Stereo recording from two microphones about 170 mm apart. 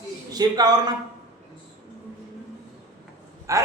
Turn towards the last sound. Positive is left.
turn(degrees=-20)  # may be behind; listen again after turning